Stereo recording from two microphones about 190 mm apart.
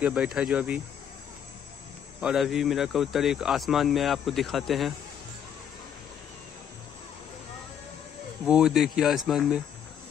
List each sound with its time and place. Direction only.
0.0 s speech: 5° right (ahead or behind)
2.1 s speech: 5° right (ahead or behind)
8.5 s speech: 5° right (ahead or behind)